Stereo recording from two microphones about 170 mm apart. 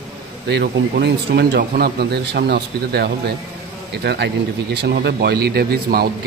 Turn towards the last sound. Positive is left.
turn(degrees=-65)  # may be behind; listen again after turning